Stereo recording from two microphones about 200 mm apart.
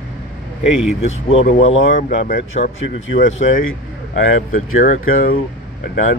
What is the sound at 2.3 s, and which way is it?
Speech, 40° left (ahead or behind).